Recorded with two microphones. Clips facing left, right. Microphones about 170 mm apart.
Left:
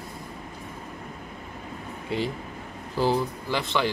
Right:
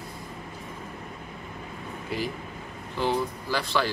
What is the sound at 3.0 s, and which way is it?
Speech, 35° left (ahead or behind).